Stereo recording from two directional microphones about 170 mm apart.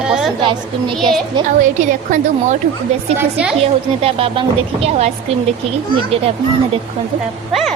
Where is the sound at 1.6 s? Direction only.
50° right (ahead or behind).